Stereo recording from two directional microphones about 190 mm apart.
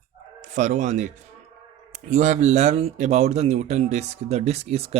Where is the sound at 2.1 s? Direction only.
40° right (ahead or behind).